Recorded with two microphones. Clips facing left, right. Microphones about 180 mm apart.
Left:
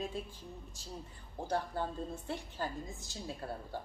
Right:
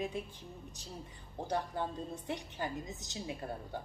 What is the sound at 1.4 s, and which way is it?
Speech, 15° right (ahead or behind).